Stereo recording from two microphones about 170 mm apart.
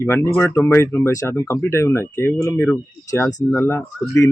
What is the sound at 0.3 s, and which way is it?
Speech, 15° left (ahead or behind).